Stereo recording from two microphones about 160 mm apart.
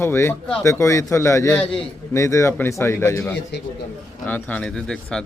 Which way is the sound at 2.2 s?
15° left (ahead or behind).